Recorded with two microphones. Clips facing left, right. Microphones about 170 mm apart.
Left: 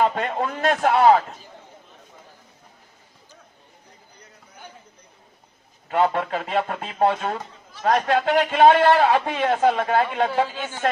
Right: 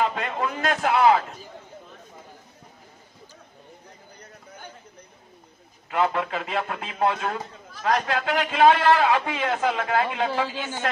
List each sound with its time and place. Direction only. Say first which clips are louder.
0.0 s speech: left 3 dB; 40° left (ahead or behind)
5.9 s speech: left 3 dB; 35° left (ahead or behind)